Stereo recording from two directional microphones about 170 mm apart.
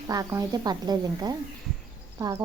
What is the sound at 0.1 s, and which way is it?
Speech, 20° right (ahead or behind).